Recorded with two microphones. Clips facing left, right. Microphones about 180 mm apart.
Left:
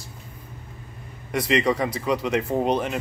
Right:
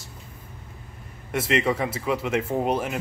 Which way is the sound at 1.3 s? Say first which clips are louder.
Left 2 dB; 5° right (ahead or behind).